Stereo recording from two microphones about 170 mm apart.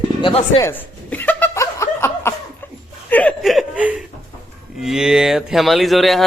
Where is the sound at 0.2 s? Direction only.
30° left (ahead or behind).